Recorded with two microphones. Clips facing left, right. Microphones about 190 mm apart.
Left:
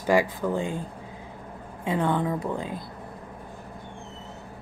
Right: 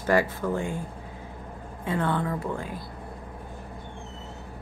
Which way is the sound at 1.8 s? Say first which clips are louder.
Left 2 dB; 15° left (ahead or behind).